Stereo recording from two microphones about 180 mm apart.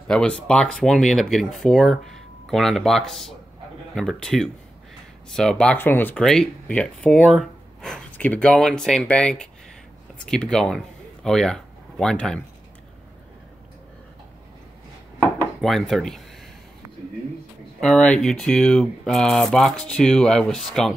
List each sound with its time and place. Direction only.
0.1 s speech: 5° left (ahead or behind)
15.2 s dishes: centre (ahead or behind)
17.7 s speech: 5° left (ahead or behind)